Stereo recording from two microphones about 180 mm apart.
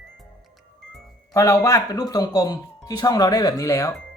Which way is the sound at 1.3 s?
15° left (ahead or behind).